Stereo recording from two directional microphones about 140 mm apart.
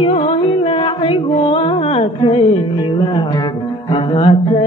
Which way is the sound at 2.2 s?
35° left (ahead or behind).